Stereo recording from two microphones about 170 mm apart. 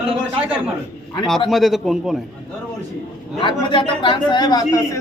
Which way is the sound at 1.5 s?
Centre (ahead or behind).